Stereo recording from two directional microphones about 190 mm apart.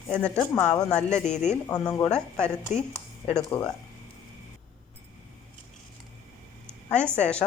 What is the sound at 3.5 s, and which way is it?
Speech, 10° left (ahead or behind).